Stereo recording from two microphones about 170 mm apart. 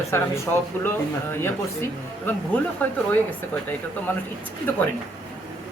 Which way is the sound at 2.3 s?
10° left (ahead or behind).